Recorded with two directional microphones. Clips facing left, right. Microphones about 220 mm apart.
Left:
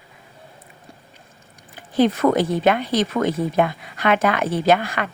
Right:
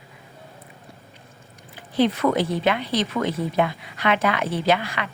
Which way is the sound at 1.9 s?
45° left (ahead or behind).